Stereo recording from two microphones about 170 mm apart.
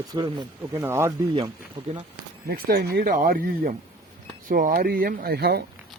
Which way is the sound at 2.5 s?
65° right (ahead or behind).